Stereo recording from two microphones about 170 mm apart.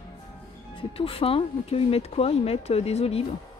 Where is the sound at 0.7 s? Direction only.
30° left (ahead or behind).